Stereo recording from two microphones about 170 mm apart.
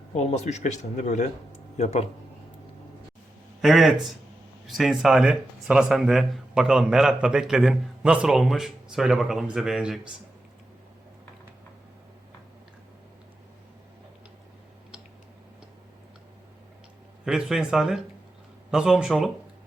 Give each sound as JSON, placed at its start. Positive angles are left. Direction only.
{"t": 0.1, "sound": "speech", "side_deg": 40}
{"t": 3.6, "sound": "speech", "side_deg": 0}
{"t": 17.2, "sound": "speech", "side_deg": -5}